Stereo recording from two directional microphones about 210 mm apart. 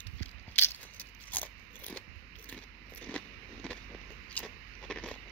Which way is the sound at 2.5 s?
10° left (ahead or behind).